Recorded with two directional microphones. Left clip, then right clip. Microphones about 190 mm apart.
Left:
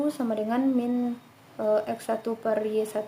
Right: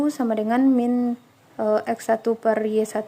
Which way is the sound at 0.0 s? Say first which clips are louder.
Right 5 dB; 40° right (ahead or behind).